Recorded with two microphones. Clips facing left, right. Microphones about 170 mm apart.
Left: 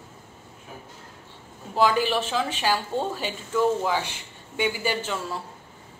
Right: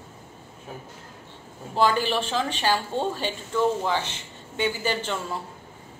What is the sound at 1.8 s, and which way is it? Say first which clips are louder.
A woman's voice: left 1 dB; 5° left (ahead or behind).